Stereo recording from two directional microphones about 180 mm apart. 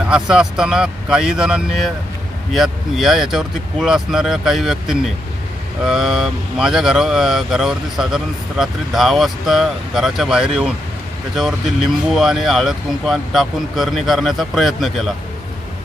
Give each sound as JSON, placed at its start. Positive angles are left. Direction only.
{"t": 0.1, "sound": "speech", "side_deg": -5}